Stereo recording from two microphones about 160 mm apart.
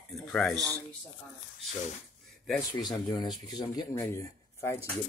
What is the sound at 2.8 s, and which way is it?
Speech, 25° left (ahead or behind).